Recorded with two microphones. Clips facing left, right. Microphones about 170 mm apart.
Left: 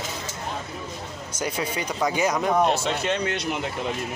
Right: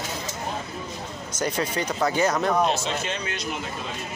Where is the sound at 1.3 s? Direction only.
10° left (ahead or behind).